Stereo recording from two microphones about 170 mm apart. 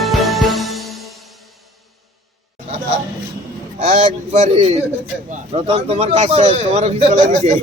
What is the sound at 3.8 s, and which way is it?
A man's voice, 45° right (ahead or behind).